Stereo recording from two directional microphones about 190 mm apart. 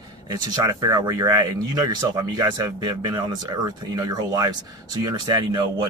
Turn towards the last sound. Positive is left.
turn(degrees=-20)  # may be behind; listen again after turning